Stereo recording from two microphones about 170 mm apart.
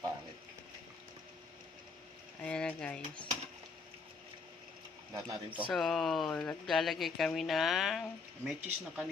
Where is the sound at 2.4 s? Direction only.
5° left (ahead or behind).